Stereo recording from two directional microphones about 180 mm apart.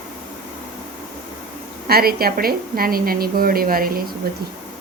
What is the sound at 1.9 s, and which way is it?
A woman's voice, 55° right (ahead or behind).